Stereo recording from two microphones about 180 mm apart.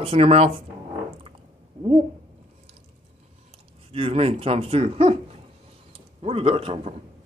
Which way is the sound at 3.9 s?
30° right (ahead or behind).